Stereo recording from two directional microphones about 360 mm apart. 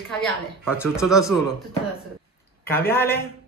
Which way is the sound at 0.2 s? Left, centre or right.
Centre.